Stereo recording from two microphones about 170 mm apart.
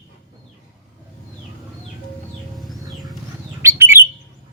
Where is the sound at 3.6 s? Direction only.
15° right (ahead or behind).